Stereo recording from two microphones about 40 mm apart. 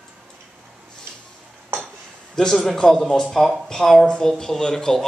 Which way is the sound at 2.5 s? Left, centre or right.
Centre.